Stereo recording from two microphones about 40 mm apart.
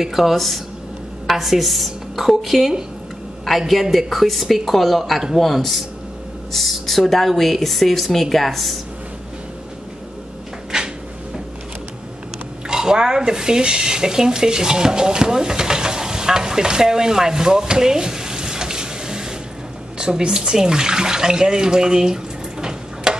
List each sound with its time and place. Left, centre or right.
0.0 s a woman's voice: centre
10.7 s cupboard open or close: centre
12.6 s speech: centre